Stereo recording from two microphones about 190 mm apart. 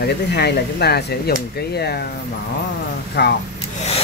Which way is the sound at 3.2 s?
65° left (ahead or behind).